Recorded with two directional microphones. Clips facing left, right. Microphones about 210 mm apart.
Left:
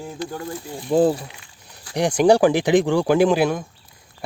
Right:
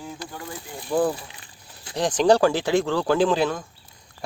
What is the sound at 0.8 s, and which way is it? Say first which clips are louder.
Speech: left 5 dB; 25° left (ahead or behind).